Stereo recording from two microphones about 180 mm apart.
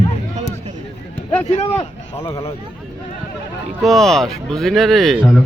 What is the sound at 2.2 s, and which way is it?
Speech, 15° left (ahead or behind).